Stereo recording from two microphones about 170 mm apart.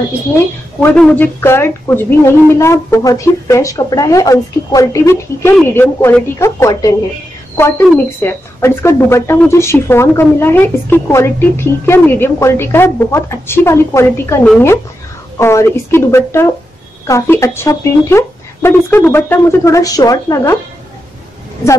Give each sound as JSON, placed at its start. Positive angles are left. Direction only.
{"t": 0.9, "sound": "speech", "side_deg": 10}